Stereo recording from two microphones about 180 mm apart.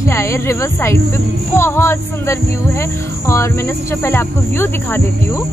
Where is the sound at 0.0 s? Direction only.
15° left (ahead or behind).